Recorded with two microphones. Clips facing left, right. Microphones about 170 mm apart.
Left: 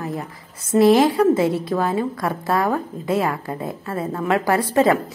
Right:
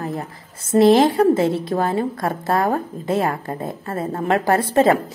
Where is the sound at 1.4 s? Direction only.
30° right (ahead or behind).